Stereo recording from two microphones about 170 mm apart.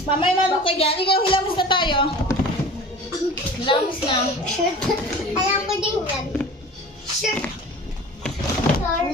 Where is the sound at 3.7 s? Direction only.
30° left (ahead or behind).